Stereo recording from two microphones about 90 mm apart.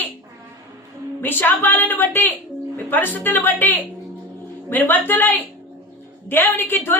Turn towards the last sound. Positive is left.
turn(degrees=25)  # may be behind; listen again after turning